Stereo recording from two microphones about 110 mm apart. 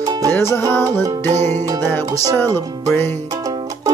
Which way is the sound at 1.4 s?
20° left (ahead or behind).